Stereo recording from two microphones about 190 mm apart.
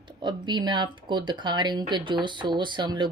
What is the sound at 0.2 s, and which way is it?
Speech, 25° right (ahead or behind).